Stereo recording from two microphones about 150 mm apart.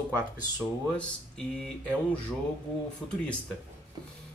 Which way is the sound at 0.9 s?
5° left (ahead or behind).